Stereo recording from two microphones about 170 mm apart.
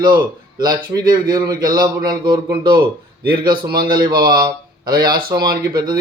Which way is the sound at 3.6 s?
65° right (ahead or behind).